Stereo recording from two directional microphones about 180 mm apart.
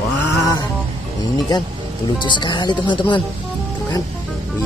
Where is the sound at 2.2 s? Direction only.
25° left (ahead or behind).